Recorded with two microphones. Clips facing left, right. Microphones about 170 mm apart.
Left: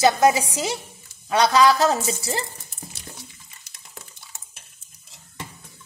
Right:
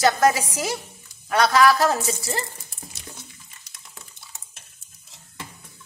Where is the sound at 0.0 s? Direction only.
15° left (ahead or behind).